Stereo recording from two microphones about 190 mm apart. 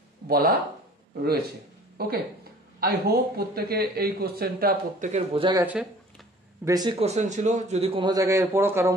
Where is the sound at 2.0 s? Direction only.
55° right (ahead or behind).